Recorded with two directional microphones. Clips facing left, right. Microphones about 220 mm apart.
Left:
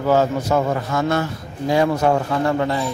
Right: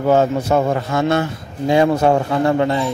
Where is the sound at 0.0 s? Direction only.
25° right (ahead or behind).